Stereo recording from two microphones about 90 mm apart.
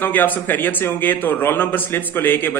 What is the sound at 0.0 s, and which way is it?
A man's voice, 20° left (ahead or behind).